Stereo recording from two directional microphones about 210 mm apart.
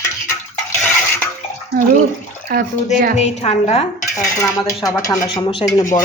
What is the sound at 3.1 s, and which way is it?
Speech, 30° left (ahead or behind).